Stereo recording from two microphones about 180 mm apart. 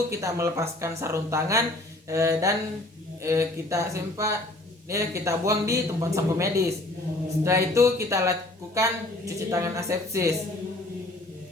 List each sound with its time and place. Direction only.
0.1 s speech: 15° right (ahead or behind)